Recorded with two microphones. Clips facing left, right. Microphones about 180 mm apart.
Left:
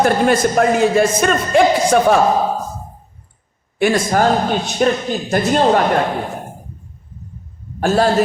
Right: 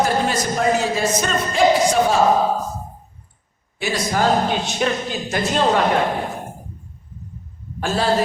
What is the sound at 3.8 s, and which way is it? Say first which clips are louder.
A man's voice: left 6 dB; 50° left (ahead or behind).